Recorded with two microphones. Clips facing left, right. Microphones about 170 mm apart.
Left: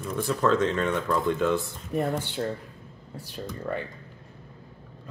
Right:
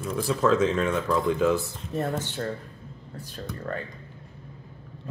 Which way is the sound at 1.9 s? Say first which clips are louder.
Left 2 dB; 15° left (ahead or behind).